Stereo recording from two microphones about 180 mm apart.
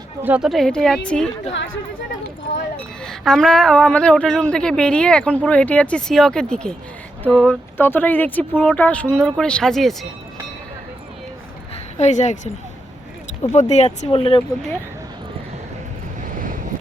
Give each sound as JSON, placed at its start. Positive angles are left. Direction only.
{"t": 0.2, "sound": "a woman's voice", "side_deg": -5}
{"t": 3.0, "sound": "a woman's voice", "side_deg": 5}
{"t": 7.8, "sound": "a woman's voice", "side_deg": 10}
{"t": 11.9, "sound": "speech", "side_deg": 40}
{"t": 13.5, "sound": "speech", "side_deg": 40}
{"t": 16.3, "sound": "wind noise", "side_deg": -50}